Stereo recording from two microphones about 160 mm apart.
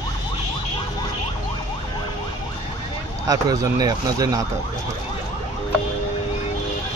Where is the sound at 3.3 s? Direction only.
25° right (ahead or behind).